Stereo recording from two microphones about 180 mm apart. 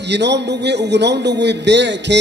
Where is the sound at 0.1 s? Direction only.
70° right (ahead or behind).